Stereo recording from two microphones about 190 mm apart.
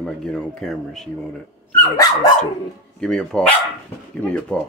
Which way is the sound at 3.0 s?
Centre (ahead or behind).